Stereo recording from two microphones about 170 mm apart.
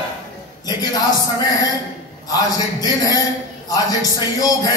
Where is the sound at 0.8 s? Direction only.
25° left (ahead or behind).